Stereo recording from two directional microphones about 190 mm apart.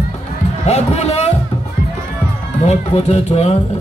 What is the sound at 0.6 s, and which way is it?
Speech, 35° left (ahead or behind).